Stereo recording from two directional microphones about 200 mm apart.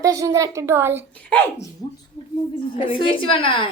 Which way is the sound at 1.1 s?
10° left (ahead or behind).